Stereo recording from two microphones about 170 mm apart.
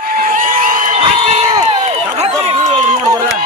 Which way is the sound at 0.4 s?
50° right (ahead or behind).